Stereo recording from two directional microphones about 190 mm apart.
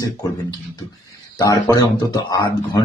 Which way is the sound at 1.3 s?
15° left (ahead or behind).